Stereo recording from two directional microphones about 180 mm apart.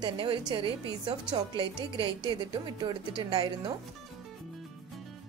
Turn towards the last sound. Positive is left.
turn(degrees=-20)  # may be behind; listen again after turning